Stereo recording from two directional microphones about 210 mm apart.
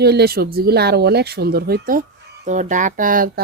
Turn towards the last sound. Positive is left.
turn(degrees=-40)  # may be behind; listen again after turning